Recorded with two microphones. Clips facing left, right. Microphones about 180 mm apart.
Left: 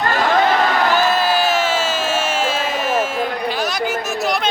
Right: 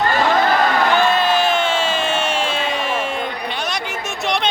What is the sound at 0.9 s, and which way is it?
Crowd, 5° left (ahead or behind).